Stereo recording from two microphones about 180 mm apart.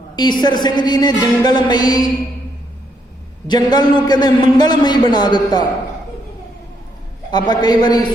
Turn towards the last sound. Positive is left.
turn(degrees=25)  # may be behind; listen again after turning